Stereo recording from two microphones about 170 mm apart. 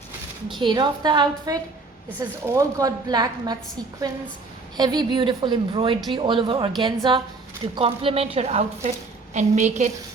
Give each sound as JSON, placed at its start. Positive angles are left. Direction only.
{"t": 0.4, "sound": "a woman's voice", "side_deg": -30}
{"t": 4.8, "sound": "a woman's voice", "side_deg": -25}